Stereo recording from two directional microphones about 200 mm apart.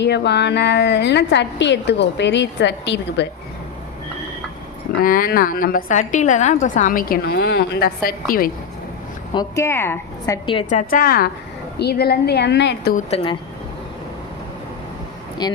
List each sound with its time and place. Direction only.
0.0 s a woman's voice: 60° left (ahead or behind)
4.9 s a woman's voice: 45° left (ahead or behind)
9.3 s a woman's voice: 15° left (ahead or behind)
10.7 s a woman's voice: 40° left (ahead or behind); by 12.9 s 60° left (ahead or behind)
13.0 s speech: 30° left (ahead or behind)
15.4 s speech: 20° left (ahead or behind)